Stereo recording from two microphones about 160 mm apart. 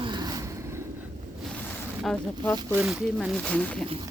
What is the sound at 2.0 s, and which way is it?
Speech, 5° left (ahead or behind).